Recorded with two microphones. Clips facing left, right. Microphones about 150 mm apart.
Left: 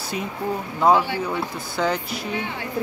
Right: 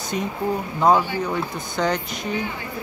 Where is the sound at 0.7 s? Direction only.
5° left (ahead or behind).